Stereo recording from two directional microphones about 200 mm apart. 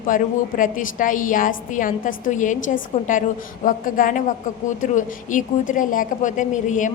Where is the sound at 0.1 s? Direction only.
40° left (ahead or behind).